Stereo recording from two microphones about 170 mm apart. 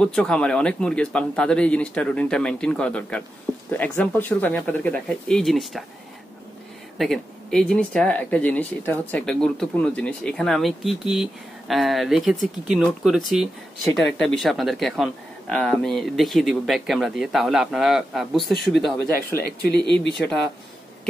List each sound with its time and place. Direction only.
0.0 s speech: 5° left (ahead or behind)
7.0 s speech: centre (ahead or behind)
19.4 s speech: 75° left (ahead or behind)
20.2 s speech: centre (ahead or behind)